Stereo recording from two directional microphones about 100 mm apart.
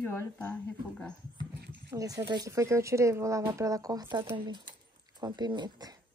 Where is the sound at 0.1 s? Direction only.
20° left (ahead or behind).